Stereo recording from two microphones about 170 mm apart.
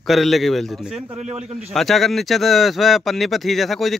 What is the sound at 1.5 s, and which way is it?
Speech, centre (ahead or behind).